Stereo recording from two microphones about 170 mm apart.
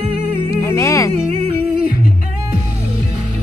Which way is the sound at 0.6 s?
15° left (ahead or behind).